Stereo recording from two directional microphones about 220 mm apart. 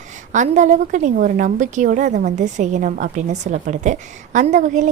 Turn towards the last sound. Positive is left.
turn(degrees=-35)  # may be behind; listen again after turning